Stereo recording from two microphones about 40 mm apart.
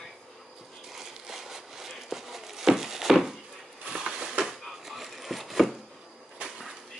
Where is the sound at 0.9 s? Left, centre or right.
Centre.